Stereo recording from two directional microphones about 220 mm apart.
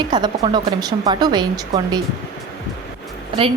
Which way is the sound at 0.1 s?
20° right (ahead or behind).